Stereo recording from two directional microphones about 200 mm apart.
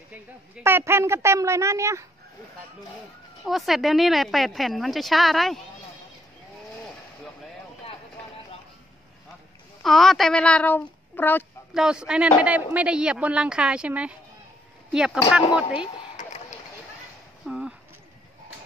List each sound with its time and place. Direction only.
0.7 s a woman's voice: 10° right (ahead or behind)
3.4 s a woman's voice: centre (ahead or behind)
9.8 s a woman's voice: centre (ahead or behind)
11.7 s a woman's voice: 5° right (ahead or behind)
16.2 s a sound: 35° left (ahead or behind)
17.5 s a sound: 5° right (ahead or behind)